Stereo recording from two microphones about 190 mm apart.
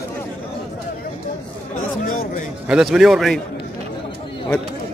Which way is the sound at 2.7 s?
5° right (ahead or behind).